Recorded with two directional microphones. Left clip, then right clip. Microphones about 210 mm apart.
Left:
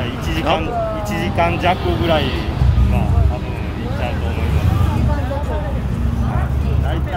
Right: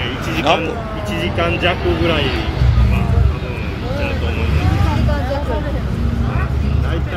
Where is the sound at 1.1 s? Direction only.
40° left (ahead or behind).